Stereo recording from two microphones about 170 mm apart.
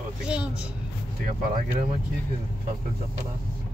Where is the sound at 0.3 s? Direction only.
5° right (ahead or behind).